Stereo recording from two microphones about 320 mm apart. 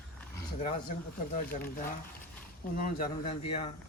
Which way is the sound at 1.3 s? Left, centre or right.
Left.